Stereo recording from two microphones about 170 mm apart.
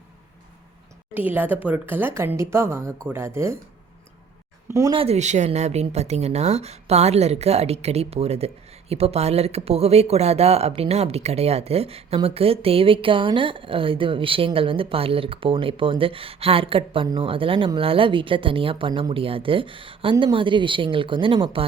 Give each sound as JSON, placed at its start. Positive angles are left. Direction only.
{"t": 1.1, "sound": "a woman's voice", "side_deg": -10}
{"t": 4.9, "sound": "speech", "side_deg": -35}